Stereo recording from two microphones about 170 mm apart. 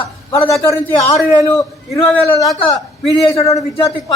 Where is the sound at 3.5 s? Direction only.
20° left (ahead or behind).